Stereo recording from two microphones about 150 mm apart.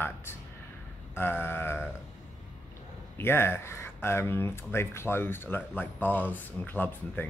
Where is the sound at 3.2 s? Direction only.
15° left (ahead or behind).